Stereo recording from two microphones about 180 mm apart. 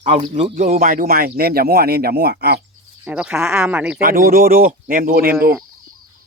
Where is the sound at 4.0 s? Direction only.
55° right (ahead or behind).